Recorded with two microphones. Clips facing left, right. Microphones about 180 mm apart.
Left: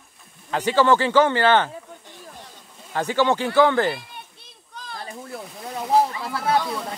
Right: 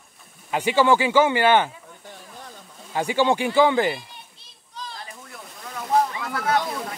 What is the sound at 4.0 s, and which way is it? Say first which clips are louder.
Children playing: left 3 dB; 55° left (ahead or behind).